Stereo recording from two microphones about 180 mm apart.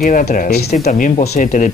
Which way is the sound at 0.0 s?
40° left (ahead or behind).